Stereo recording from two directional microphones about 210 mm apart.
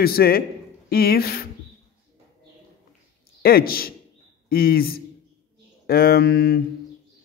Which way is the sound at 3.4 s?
45° left (ahead or behind).